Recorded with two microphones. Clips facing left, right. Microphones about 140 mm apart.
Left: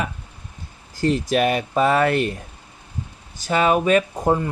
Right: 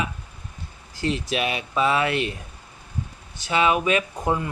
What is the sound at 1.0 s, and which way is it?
Speech, 45° left (ahead or behind).